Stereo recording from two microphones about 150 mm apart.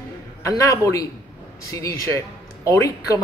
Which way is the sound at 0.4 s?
20° left (ahead or behind).